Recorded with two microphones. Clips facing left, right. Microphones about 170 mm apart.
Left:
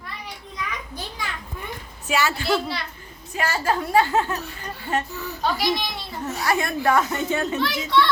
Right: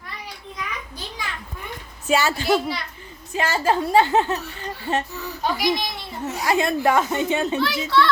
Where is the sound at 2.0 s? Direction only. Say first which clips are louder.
Right 3 dB; 30° right (ahead or behind).